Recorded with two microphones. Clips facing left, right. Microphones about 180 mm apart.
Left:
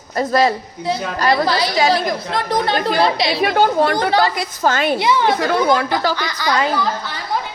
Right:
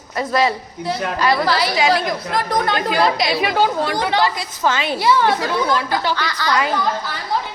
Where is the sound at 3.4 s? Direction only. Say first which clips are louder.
Left 6 dB; 50° left (ahead or behind).